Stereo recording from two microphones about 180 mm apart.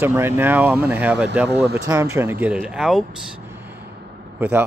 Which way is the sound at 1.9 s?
15° right (ahead or behind).